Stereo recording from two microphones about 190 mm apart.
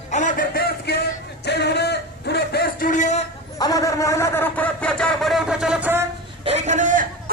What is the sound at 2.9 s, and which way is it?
Speech, 40° left (ahead or behind).